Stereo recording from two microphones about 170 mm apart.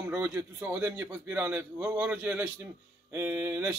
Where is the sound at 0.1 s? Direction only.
10° right (ahead or behind).